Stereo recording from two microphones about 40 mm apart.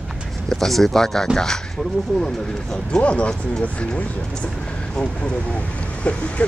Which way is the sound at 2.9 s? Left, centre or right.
Left.